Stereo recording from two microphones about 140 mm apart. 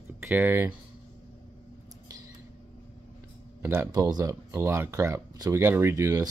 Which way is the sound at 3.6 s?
15° right (ahead or behind).